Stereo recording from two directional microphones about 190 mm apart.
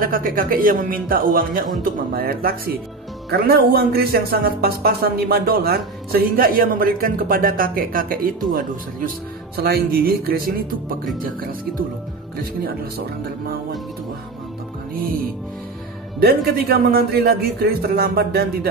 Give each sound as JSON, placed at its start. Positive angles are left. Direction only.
{"t": 0.0, "sound": "speech", "side_deg": -45}
{"t": 16.2, "sound": "speech", "side_deg": -55}